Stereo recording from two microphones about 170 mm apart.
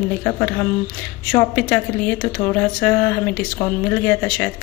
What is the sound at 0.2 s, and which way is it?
Speech, 15° left (ahead or behind).